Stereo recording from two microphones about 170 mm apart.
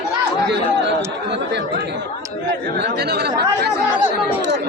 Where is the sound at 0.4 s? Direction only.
90° right.